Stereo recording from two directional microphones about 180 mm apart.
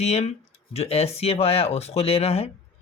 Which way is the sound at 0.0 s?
35° left (ahead or behind).